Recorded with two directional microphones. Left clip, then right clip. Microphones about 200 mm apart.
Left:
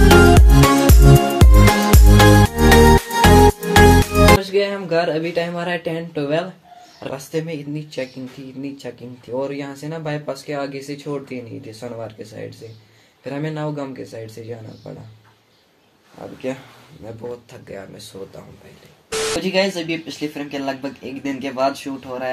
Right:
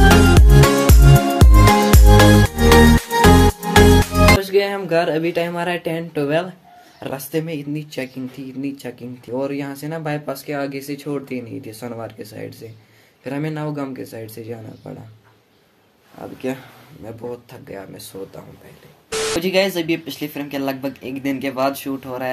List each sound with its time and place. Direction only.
0.2 s music: centre (ahead or behind)
4.4 s speech: 10° right (ahead or behind)
17.0 s speech: 5° right (ahead or behind)
19.0 s a sound: centre (ahead or behind)
19.4 s speech: 10° right (ahead or behind)